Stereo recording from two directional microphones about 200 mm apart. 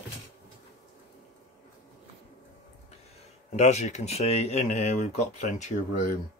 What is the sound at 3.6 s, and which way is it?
A man's voice, 35° left (ahead or behind).